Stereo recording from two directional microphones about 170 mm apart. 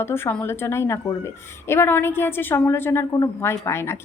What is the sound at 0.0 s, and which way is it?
A woman's voice, 10° left (ahead or behind).